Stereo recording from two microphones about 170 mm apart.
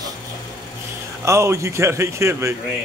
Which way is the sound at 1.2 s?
15° right (ahead or behind).